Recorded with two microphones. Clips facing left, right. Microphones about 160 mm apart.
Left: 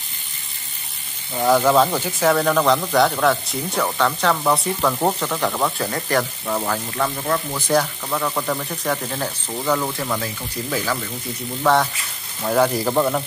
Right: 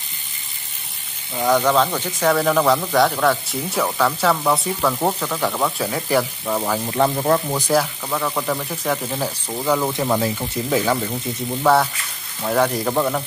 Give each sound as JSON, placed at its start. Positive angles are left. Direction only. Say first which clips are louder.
{"t": 1.3, "sound": "speech", "louder": "left 1 dB", "side_deg": 5}
{"t": 6.9, "sound": "speech", "louder": "right 8 dB", "side_deg": -30}
{"t": 7.5, "sound": "speech", "louder": "right 1 dB", "side_deg": -10}
{"t": 11.6, "sound": "speech", "louder": "right 1 dB", "side_deg": -5}